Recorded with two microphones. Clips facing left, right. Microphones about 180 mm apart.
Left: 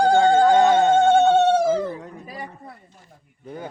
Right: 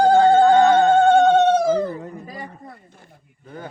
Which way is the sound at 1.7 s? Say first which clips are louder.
Right 2 dB; centre (ahead or behind).